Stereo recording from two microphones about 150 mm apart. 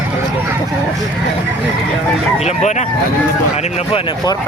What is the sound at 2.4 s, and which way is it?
Speech, 50° left (ahead or behind).